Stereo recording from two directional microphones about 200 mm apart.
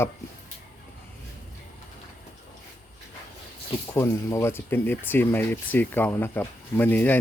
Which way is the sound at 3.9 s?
15° left (ahead or behind).